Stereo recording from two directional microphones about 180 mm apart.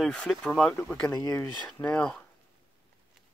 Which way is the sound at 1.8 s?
5° left (ahead or behind).